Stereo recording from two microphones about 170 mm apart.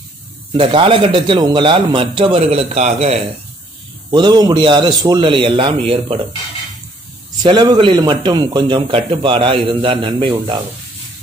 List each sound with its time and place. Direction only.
0.5 s a man's voice: 30° right (ahead or behind)
4.1 s a man's voice: 25° right (ahead or behind)
7.4 s a man's voice: 25° right (ahead or behind)